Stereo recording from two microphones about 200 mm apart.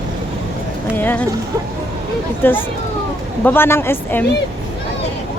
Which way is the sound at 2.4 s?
10° left (ahead or behind).